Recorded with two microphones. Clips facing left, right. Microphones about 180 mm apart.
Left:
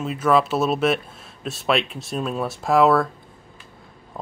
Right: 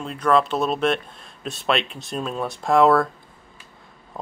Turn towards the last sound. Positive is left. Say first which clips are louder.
# even
turn(degrees=0)  # may be behind; listen again after turning